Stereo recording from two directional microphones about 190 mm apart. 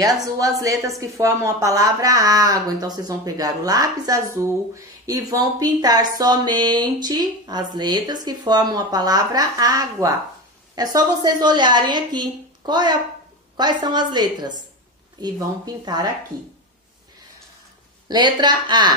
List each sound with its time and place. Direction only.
0.0 s speech: 20° right (ahead or behind)
18.0 s speech: 25° right (ahead or behind)